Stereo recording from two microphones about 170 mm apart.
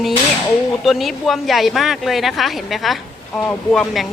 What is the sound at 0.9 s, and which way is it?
A woman's voice, centre (ahead or behind).